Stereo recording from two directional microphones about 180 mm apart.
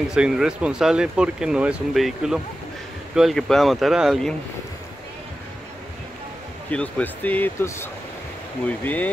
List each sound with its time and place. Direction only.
0.1 s speech: 5° right (ahead or behind)
6.7 s speech: 10° left (ahead or behind)